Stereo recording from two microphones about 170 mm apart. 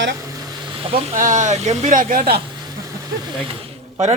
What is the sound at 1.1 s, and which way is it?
A man's voice, 50° right (ahead or behind).